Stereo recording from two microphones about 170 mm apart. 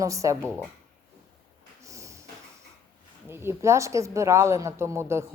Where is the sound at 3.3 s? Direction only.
15° right (ahead or behind).